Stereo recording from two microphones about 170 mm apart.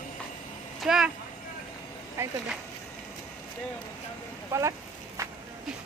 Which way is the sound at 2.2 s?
15° right (ahead or behind).